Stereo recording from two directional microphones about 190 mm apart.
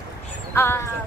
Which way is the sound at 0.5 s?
10° left (ahead or behind).